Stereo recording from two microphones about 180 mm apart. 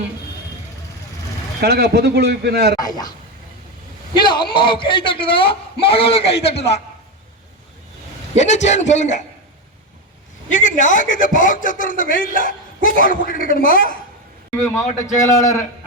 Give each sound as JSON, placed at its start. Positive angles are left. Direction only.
{"t": 1.6, "sound": "a man's voice", "side_deg": -65}
{"t": 2.7, "sound": "a man's voice", "side_deg": 20}
{"t": 4.1, "sound": "a man's voice", "side_deg": 25}
{"t": 8.4, "sound": "a man's voice", "side_deg": 40}
{"t": 10.5, "sound": "a man's voice", "side_deg": 45}
{"t": 14.8, "sound": "a man's voice", "side_deg": 15}